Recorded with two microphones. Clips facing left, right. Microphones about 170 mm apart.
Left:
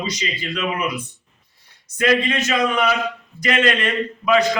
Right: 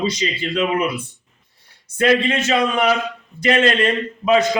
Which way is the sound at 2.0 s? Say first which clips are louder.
Right 2 dB; 30° right (ahead or behind).